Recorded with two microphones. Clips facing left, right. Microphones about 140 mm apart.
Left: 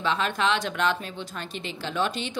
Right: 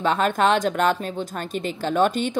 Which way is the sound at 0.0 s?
45° right (ahead or behind).